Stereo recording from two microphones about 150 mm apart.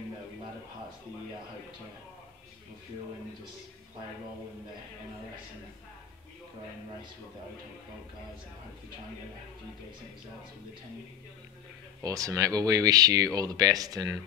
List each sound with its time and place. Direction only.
12.0 s speech: 20° right (ahead or behind)